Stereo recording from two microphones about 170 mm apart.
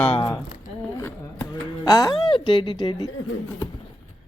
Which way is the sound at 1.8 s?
25° left (ahead or behind).